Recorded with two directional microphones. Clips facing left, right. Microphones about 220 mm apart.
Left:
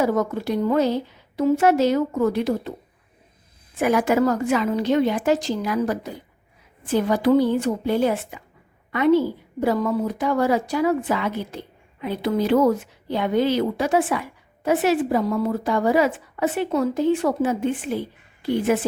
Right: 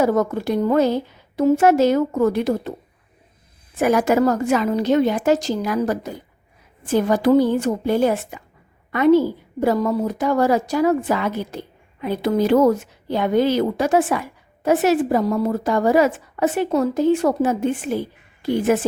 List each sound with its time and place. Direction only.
0.0 s a woman's voice: 50° right (ahead or behind)
3.8 s a woman's voice: 40° right (ahead or behind)